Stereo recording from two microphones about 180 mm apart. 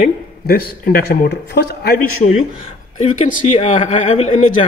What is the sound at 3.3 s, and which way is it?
Speech, 50° left (ahead or behind).